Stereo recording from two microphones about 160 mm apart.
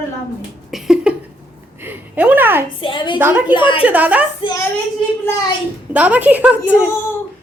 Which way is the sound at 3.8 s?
10° right (ahead or behind).